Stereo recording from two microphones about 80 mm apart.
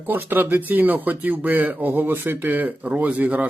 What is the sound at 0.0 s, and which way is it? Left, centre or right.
Speech, right.